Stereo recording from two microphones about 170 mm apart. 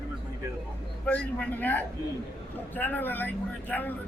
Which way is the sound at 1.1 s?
10° left (ahead or behind).